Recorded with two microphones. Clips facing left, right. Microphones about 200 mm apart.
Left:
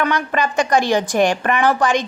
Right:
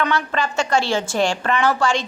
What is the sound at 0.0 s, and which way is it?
A woman's voice, 15° left (ahead or behind).